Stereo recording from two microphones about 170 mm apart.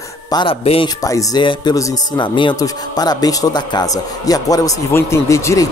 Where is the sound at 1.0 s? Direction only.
20° left (ahead or behind).